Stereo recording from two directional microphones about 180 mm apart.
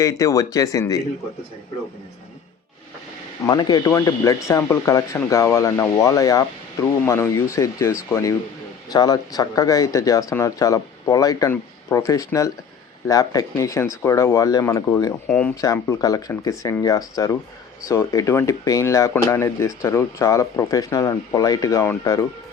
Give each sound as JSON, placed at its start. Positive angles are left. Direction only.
{"t": 0.0, "sound": "speech", "side_deg": 20}
{"t": 3.4, "sound": "speech", "side_deg": 25}
{"t": 15.3, "sound": "speech", "side_deg": 5}
{"t": 15.6, "sound": "speech", "side_deg": 20}